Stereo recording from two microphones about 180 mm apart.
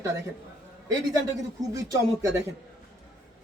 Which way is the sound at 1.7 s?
20° right (ahead or behind).